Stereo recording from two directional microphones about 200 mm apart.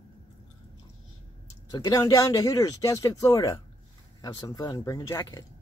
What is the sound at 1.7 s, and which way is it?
Speech, 20° left (ahead or behind).